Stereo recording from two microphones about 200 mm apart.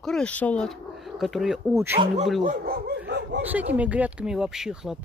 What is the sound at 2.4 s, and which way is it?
Dog, 45° right (ahead or behind).